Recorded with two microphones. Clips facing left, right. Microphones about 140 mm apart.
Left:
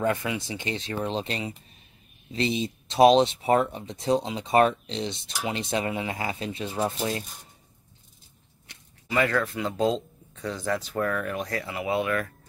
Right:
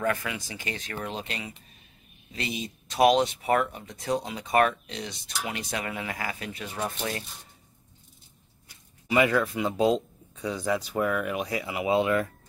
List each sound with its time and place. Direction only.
0.0 s speech: 25° left (ahead or behind)
9.1 s speech: 15° right (ahead or behind)